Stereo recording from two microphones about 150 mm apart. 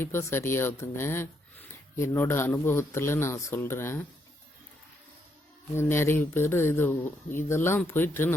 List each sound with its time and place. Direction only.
0.0 s speech: 15° left (ahead or behind)
5.7 s speech: 15° left (ahead or behind)